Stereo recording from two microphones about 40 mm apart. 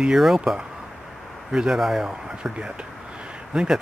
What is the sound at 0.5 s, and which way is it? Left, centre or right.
Speech, centre.